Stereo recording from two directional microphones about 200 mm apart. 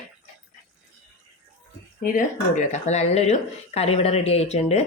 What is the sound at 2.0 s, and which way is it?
Speech, 40° left (ahead or behind).